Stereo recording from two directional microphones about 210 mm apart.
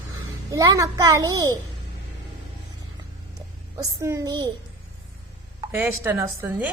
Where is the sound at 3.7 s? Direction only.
15° right (ahead or behind).